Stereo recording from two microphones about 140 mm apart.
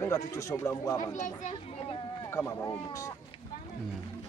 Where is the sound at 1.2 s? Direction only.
55° left (ahead or behind).